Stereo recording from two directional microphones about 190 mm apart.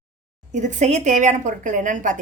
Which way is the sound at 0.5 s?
40° right (ahead or behind).